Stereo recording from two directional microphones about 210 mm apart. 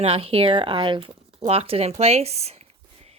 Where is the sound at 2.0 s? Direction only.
30° right (ahead or behind).